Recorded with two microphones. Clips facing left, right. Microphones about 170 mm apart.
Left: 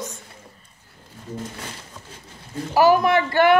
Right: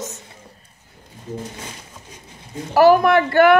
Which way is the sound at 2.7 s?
50° right (ahead or behind).